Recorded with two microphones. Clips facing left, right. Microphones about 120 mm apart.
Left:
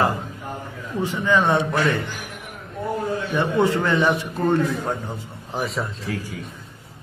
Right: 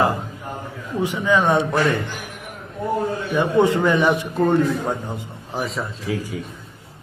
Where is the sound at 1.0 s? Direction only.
10° right (ahead or behind).